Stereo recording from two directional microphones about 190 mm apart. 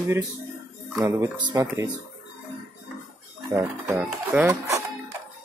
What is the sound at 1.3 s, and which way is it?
Speech, 20° right (ahead or behind).